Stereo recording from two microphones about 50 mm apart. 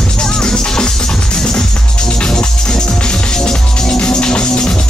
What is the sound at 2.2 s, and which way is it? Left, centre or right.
Music, centre.